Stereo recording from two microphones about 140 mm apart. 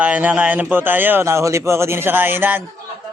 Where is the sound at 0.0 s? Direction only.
10° right (ahead or behind).